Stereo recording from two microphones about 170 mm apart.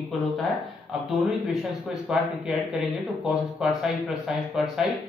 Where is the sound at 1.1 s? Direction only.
Centre (ahead or behind).